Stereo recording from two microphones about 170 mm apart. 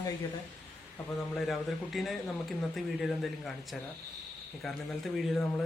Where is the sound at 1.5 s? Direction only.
Centre (ahead or behind).